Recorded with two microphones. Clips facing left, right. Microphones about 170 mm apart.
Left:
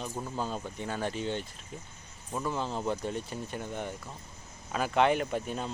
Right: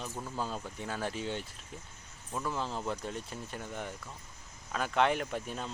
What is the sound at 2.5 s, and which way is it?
Speech, centre (ahead or behind).